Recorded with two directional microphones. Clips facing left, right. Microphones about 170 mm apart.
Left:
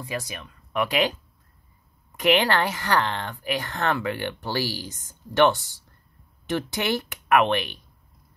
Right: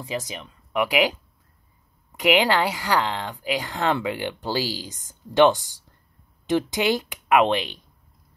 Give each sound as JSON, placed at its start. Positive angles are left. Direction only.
{"t": 0.0, "sound": "speech", "side_deg": -20}
{"t": 2.1, "sound": "speech", "side_deg": -10}